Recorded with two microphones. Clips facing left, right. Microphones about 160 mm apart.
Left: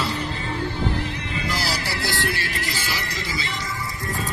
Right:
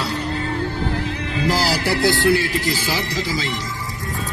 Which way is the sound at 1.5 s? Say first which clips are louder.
Right 9 dB; 90° right.